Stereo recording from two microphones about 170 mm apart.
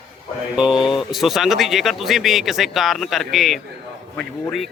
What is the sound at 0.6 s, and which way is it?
Speech, 5° right (ahead or behind).